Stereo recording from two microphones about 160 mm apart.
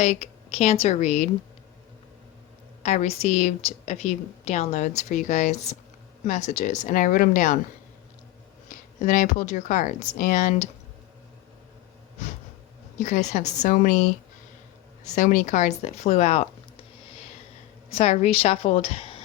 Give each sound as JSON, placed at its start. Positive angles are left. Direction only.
{"t": 0.0, "sound": "a woman's voice", "side_deg": 40}
{"t": 2.8, "sound": "a woman's voice", "side_deg": 45}
{"t": 9.0, "sound": "a woman's voice", "side_deg": 50}
{"t": 13.0, "sound": "a woman's voice", "side_deg": 50}
{"t": 17.8, "sound": "a woman's voice", "side_deg": 40}